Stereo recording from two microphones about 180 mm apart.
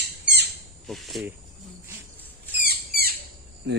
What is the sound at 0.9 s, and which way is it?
Speech, centre (ahead or behind).